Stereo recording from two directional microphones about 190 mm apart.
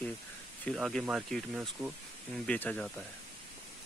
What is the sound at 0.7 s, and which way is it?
Speech, centre (ahead or behind).